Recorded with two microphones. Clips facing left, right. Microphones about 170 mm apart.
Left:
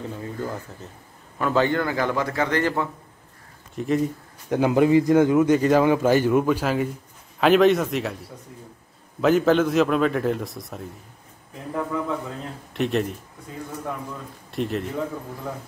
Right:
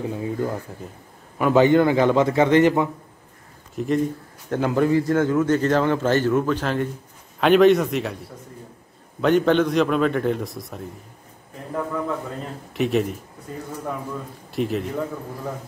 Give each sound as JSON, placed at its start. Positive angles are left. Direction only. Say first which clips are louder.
{"t": 0.1, "sound": "a man's voice", "louder": "right 5 dB", "side_deg": -15}
{"t": 3.7, "sound": "speech", "louder": "right 1 dB", "side_deg": 0}
{"t": 4.5, "sound": "a man's voice", "louder": "left 2 dB", "side_deg": 15}
{"t": 9.2, "sound": "a man's voice", "louder": "even", "side_deg": 0}
{"t": 14.5, "sound": "a man's voice", "louder": "right 2 dB", "side_deg": 0}